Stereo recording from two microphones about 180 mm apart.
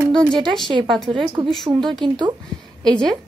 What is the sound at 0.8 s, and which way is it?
Speech, centre (ahead or behind).